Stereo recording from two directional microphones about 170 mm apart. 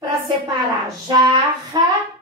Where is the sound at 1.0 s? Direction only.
25° right (ahead or behind).